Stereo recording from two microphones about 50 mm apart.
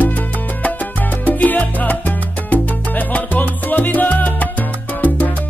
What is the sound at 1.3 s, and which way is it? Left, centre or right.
Salsa music, left.